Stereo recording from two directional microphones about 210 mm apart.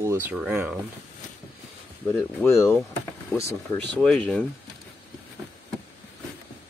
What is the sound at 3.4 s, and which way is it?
Speech, 55° right (ahead or behind).